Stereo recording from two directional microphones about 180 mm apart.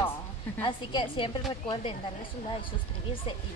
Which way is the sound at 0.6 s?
25° left (ahead or behind).